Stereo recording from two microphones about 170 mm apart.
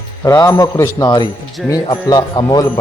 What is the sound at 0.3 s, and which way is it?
Speech, 20° left (ahead or behind).